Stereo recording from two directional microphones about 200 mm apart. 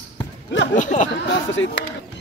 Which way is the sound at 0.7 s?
40° left (ahead or behind).